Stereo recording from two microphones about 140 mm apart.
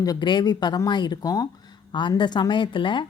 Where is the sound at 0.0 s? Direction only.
30° left (ahead or behind).